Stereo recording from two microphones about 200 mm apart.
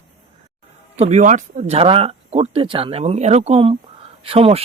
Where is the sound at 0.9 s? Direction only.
30° right (ahead or behind).